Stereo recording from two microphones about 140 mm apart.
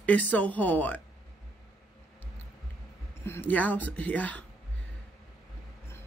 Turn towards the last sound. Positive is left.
turn(degrees=10)  # may be behind; listen again after turning